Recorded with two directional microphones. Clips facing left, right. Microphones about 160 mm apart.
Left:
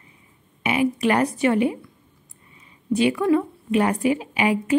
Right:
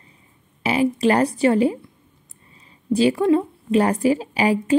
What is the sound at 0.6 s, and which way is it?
A woman's voice, 30° right (ahead or behind).